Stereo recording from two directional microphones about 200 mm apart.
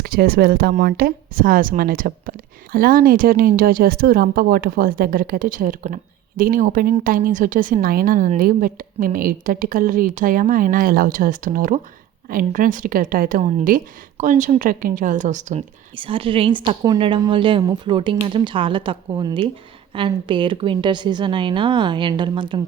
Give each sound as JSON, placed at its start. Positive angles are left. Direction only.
{"t": 0.0, "sound": "a woman's voice", "side_deg": -50}